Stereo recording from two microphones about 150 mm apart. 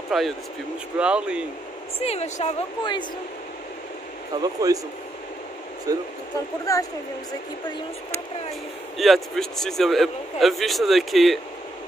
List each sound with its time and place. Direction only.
0.1 s speech: centre (ahead or behind)
2.0 s a woman's voice: 45° left (ahead or behind)
2.8 s speech: 30° left (ahead or behind)
4.4 s speech: 25° right (ahead or behind)
5.9 s speech: 25° right (ahead or behind)
6.6 s speech: 20° left (ahead or behind)
8.9 s speech: centre (ahead or behind)